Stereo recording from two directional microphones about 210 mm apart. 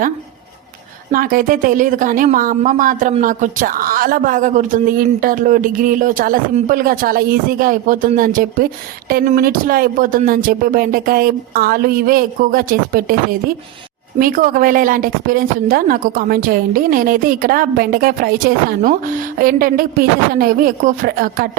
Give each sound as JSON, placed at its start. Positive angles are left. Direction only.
{"t": 1.1, "sound": "a woman's voice", "side_deg": -40}